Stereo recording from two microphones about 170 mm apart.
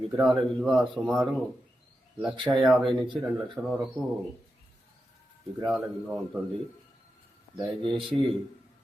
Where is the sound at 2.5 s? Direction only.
10° right (ahead or behind).